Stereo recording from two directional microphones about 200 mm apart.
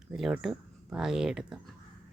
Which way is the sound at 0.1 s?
Centre (ahead or behind).